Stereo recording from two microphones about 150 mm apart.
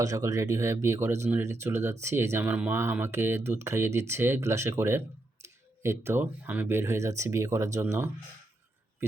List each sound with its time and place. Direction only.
0.0 s speech: 20° right (ahead or behind)